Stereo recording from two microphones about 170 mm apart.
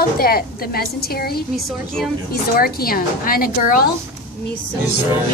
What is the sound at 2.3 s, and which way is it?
A woman's voice, 60° left (ahead or behind).